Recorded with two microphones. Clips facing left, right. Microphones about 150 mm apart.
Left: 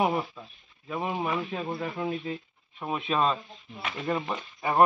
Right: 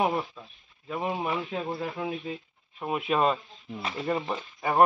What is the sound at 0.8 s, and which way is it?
Speech, 5° right (ahead or behind).